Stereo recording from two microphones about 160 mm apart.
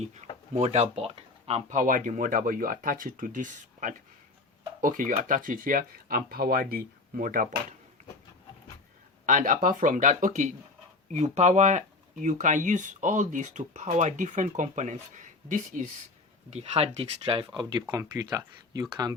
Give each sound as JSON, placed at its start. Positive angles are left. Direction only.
{"t": 0.0, "sound": "speech", "side_deg": -45}
{"t": 9.2, "sound": "speech", "side_deg": -55}
{"t": 16.5, "sound": "speech", "side_deg": -40}